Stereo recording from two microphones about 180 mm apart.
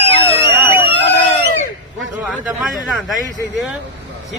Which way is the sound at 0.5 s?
10° right (ahead or behind).